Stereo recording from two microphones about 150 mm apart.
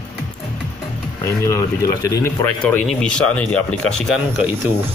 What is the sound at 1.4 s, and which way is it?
Speech, 20° left (ahead or behind).